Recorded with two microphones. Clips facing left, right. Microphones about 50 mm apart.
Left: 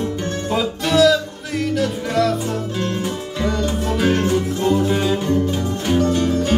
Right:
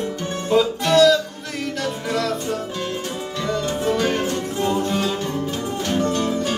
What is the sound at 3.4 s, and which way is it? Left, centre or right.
Music, centre.